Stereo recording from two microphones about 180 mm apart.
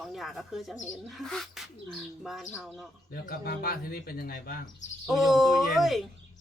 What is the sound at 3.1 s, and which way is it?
Speech, 55° left (ahead or behind).